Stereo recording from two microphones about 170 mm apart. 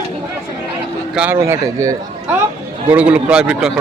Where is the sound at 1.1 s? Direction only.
10° right (ahead or behind).